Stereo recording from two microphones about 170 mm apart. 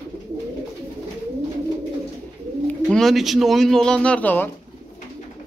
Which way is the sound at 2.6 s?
5° left (ahead or behind).